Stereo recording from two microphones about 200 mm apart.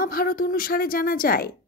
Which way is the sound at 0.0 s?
45° left (ahead or behind).